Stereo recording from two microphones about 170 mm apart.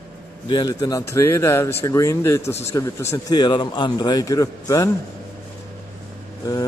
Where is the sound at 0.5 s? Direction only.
25° left (ahead or behind).